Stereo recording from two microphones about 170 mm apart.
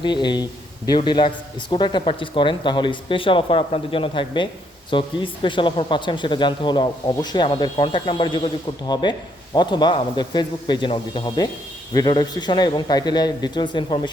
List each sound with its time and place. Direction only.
0.0 s speech: 25° left (ahead or behind)